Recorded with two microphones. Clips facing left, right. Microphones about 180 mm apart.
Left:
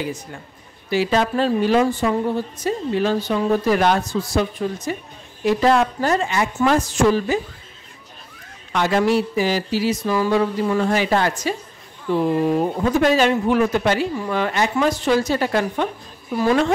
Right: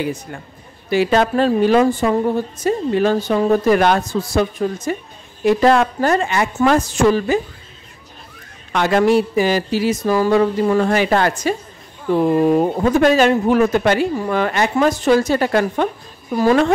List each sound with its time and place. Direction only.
0.8 s a woman's voice: 55° right (ahead or behind)
8.7 s a woman's voice: 60° right (ahead or behind)